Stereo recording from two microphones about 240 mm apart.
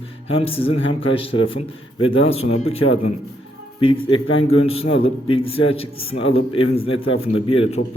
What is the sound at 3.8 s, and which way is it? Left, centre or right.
A man's voice, left.